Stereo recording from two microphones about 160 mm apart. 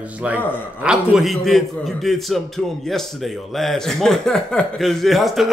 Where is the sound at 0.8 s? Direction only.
Centre (ahead or behind).